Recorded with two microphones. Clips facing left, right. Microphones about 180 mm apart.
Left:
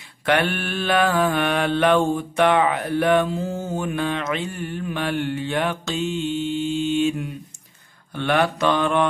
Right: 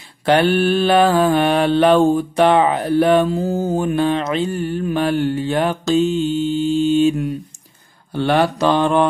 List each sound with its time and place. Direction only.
0.2 s mantra: 30° right (ahead or behind)